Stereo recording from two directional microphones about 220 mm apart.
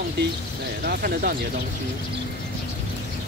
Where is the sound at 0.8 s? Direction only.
45° right (ahead or behind).